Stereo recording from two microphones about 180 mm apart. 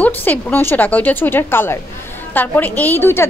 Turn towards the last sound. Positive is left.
turn(degrees=10)  # may be behind; listen again after turning